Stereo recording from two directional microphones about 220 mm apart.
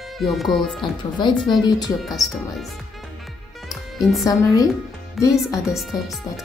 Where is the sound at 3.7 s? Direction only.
Centre (ahead or behind).